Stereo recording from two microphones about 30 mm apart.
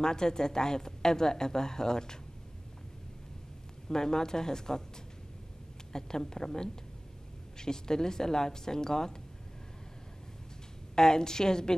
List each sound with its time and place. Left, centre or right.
0.0 s a woman's voice: left
3.9 s a woman's voice: left
5.9 s a woman's voice: left
11.0 s a woman's voice: left